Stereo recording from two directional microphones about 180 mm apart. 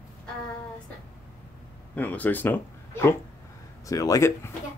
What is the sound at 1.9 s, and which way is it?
Speech, 10° left (ahead or behind).